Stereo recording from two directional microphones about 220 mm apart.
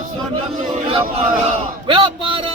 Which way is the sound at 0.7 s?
25° right (ahead or behind).